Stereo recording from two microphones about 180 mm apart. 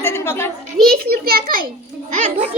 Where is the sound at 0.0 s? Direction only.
15° left (ahead or behind).